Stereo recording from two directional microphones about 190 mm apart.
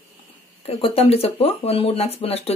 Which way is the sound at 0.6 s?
30° left (ahead or behind).